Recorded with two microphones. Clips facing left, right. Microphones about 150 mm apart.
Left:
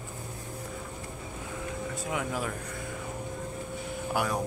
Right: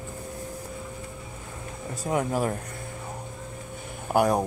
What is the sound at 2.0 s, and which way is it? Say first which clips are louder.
Speech: right 8 dB; 40° right (ahead or behind).